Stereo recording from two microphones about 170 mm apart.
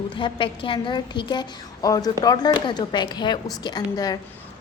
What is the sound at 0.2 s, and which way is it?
A woman's voice, 30° left (ahead or behind).